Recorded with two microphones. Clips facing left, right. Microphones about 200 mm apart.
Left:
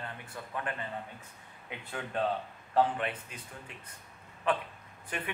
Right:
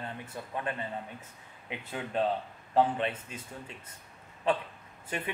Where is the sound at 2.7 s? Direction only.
25° right (ahead or behind).